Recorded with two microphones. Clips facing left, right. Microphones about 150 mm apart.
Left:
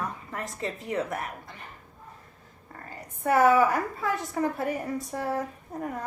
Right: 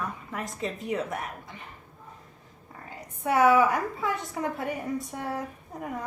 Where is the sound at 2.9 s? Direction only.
Centre (ahead or behind).